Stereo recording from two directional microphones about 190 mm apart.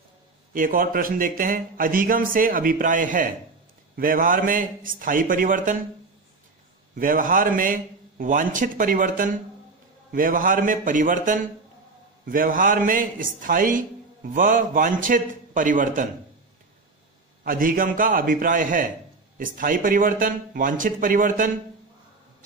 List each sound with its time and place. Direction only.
0.5 s a man's voice: 45° right (ahead or behind)
7.0 s a man's voice: 45° right (ahead or behind)
17.4 s a man's voice: 50° right (ahead or behind)